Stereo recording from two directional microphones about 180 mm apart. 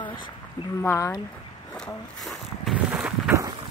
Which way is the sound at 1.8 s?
Centre (ahead or behind).